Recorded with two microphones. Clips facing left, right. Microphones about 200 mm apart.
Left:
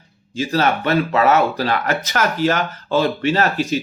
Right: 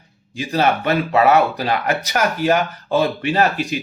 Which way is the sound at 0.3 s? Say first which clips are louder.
Even; 15° right (ahead or behind).